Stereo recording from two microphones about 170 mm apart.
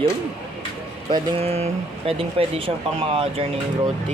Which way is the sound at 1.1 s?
35° right (ahead or behind).